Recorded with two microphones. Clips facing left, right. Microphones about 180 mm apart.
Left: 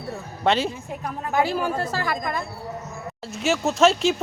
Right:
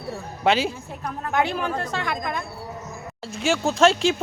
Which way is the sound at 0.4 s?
Centre (ahead or behind).